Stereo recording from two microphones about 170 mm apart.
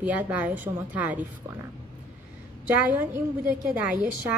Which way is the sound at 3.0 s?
10° right (ahead or behind).